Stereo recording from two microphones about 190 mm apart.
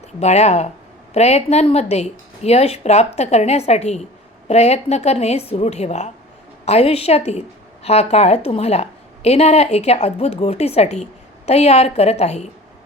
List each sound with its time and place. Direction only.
0.2 s a woman's voice: 35° left (ahead or behind)